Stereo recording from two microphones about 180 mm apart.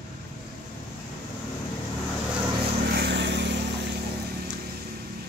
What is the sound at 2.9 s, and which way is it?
Vehicle, 70° right (ahead or behind).